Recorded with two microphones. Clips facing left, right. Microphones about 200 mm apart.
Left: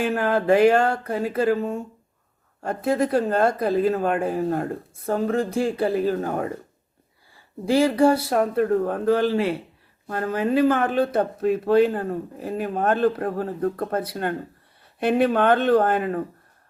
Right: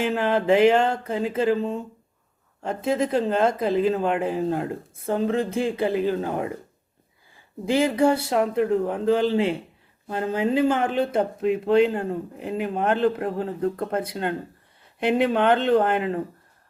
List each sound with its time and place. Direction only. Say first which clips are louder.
0.1 s speech: left 1 dB; 20° right (ahead or behind)